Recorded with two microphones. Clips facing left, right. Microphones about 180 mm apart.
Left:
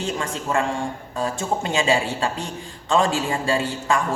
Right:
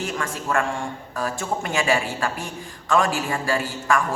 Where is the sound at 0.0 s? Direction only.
20° left (ahead or behind).